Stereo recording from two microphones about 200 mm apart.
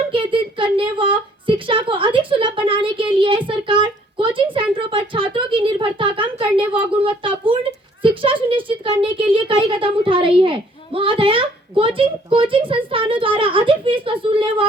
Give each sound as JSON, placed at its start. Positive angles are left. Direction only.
{"t": 0.1, "sound": "speech", "side_deg": -25}